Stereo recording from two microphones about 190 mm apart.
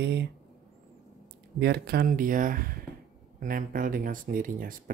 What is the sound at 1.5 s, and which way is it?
Speech, 55° right (ahead or behind).